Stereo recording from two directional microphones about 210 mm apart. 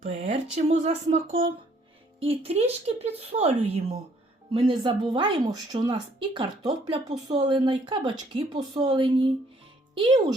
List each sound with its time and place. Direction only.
0.0 s speech: 35° right (ahead or behind)
2.2 s a woman's voice: 30° right (ahead or behind)